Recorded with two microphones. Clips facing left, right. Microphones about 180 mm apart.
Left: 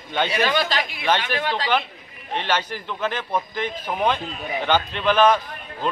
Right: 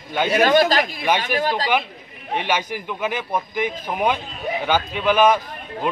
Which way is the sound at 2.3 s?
10° right (ahead or behind).